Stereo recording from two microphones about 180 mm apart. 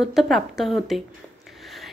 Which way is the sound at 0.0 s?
Centre (ahead or behind).